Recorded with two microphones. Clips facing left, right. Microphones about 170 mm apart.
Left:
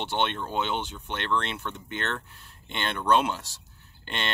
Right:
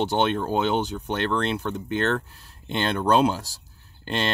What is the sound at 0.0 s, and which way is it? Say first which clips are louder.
Speech: right 6 dB; 40° right (ahead or behind).